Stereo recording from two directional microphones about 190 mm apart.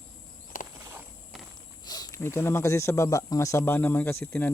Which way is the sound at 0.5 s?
45° left (ahead or behind).